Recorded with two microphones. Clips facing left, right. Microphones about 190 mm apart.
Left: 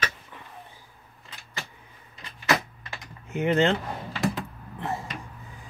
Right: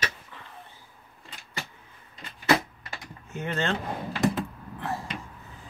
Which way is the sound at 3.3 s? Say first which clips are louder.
Left 7 dB; 15° left (ahead or behind).